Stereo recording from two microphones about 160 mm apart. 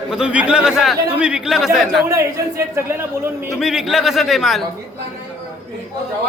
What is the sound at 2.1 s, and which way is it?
Speech, 20° right (ahead or behind).